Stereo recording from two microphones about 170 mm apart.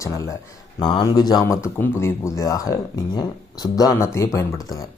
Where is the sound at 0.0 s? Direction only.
20° left (ahead or behind).